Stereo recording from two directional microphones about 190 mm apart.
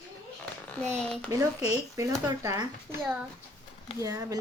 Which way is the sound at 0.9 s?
5° left (ahead or behind).